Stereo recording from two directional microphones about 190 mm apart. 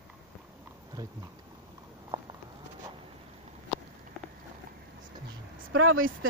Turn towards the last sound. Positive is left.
turn(degrees=-90)